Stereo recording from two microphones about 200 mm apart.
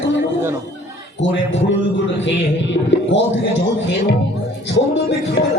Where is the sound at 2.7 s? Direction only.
65° left (ahead or behind).